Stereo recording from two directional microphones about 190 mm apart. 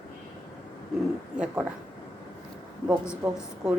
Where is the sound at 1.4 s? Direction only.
5° right (ahead or behind).